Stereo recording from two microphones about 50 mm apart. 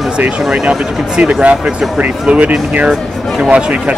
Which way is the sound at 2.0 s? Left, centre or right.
Right.